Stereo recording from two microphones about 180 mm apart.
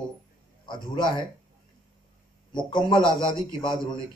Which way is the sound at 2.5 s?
25° left (ahead or behind).